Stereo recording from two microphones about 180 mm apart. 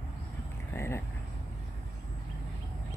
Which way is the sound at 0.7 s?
15° left (ahead or behind).